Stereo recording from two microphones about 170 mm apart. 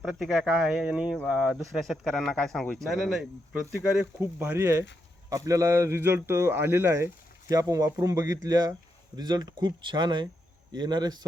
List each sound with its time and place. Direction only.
0.0 s a man's voice: 5° right (ahead or behind); by 11.3 s 25° right (ahead or behind)